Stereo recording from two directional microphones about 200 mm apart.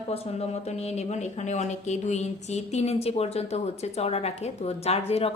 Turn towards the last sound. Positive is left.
turn(degrees=30)  # may be behind; listen again after turning